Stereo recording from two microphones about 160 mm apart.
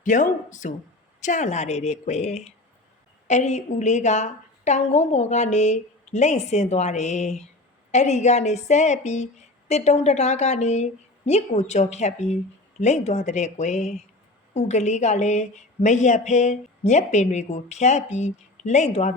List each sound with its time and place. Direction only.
0.0 s a woman's voice: 55° left (ahead or behind)